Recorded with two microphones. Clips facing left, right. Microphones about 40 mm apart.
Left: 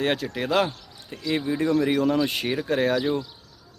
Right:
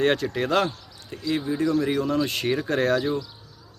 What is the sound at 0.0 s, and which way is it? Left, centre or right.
Speech, centre.